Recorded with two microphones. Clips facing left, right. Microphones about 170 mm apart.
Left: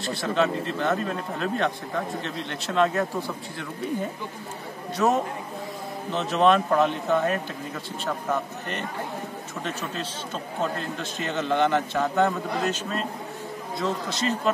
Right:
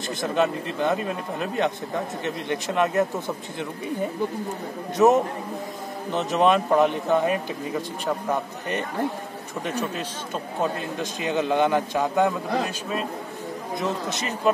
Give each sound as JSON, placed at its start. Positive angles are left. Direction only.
{"t": 0.0, "sound": "a man's voice", "side_deg": -20}
{"t": 4.9, "sound": "a man's voice", "side_deg": -20}
{"t": 9.7, "sound": "a man's voice", "side_deg": -15}